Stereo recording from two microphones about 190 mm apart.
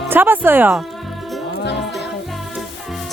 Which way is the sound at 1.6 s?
65° left (ahead or behind).